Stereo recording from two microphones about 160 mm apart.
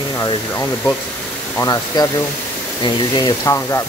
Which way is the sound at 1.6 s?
25° left (ahead or behind).